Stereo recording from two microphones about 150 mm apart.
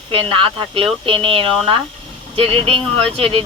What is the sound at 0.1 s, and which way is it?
Speech, 35° right (ahead or behind).